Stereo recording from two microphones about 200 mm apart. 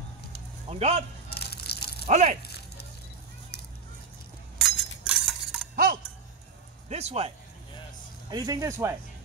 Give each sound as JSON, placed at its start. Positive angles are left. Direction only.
{"t": 0.7, "sound": "speech", "side_deg": -30}
{"t": 1.3, "sound": "crushing", "side_deg": 55}
{"t": 2.0, "sound": "speech", "side_deg": -35}
{"t": 2.4, "sound": "a sound", "side_deg": 55}
{"t": 4.6, "sound": "chink", "side_deg": 0}
{"t": 6.9, "sound": "speech", "side_deg": -35}
{"t": 8.3, "sound": "speech", "side_deg": -20}